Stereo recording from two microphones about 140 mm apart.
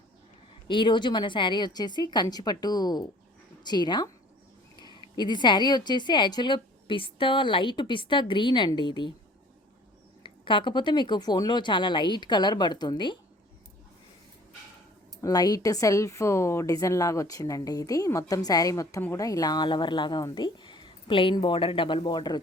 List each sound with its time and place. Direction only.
0.7 s a woman's voice: 35° left (ahead or behind)
5.1 s a woman's voice: 30° left (ahead or behind)
10.2 s a woman's voice: 35° left (ahead or behind)
15.2 s a woman's voice: 25° left (ahead or behind)